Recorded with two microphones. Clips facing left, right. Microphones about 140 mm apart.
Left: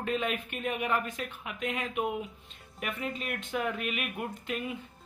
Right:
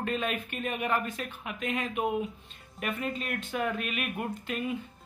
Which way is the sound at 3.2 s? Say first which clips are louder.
Left 1 dB; 10° left (ahead or behind).